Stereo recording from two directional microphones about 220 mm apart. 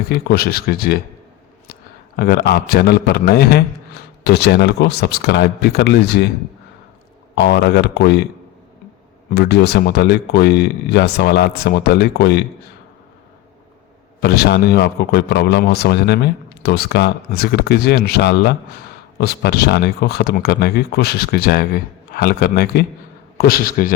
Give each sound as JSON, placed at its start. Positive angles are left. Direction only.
{"t": 0.1, "sound": "a man's voice", "side_deg": 45}
{"t": 7.3, "sound": "a man's voice", "side_deg": 45}
{"t": 9.3, "sound": "a man's voice", "side_deg": 50}
{"t": 14.2, "sound": "a man's voice", "side_deg": 45}